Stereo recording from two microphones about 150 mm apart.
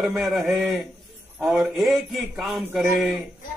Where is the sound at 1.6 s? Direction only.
Centre (ahead or behind).